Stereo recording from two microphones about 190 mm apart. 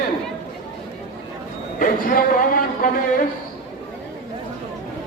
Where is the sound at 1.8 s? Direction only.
45° left (ahead or behind).